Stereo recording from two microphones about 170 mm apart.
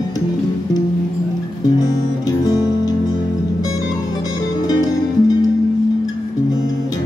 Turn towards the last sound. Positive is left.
turn(degrees=25)  # may be behind; listen again after turning